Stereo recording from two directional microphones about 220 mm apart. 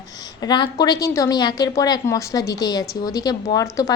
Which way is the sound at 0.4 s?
20° left (ahead or behind).